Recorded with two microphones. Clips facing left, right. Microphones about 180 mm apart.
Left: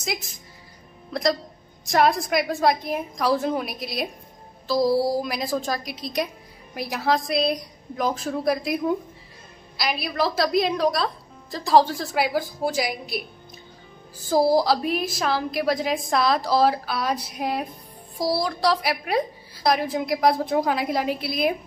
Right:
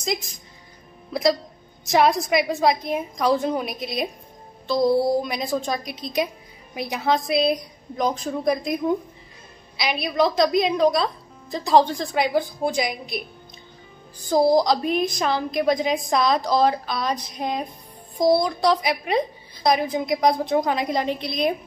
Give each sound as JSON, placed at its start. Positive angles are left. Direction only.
{"t": 1.1, "sound": "a woman's voice", "side_deg": -5}
{"t": 14.2, "sound": "a woman's voice", "side_deg": 5}
{"t": 18.1, "sound": "speech", "side_deg": -20}
{"t": 18.4, "sound": "a woman's voice", "side_deg": 0}